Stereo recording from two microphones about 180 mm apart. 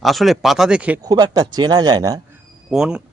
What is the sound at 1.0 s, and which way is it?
Speech, 20° right (ahead or behind).